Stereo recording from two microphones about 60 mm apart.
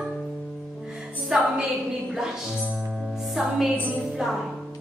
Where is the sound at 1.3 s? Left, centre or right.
Centre.